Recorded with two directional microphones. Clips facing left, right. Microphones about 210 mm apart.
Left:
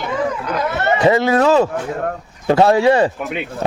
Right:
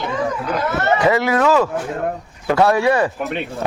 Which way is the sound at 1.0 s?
25° left (ahead or behind).